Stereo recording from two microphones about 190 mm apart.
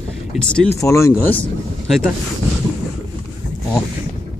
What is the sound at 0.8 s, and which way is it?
Speech, 15° left (ahead or behind).